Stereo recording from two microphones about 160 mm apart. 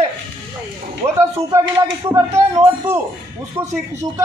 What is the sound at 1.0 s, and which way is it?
Speech, 15° right (ahead or behind).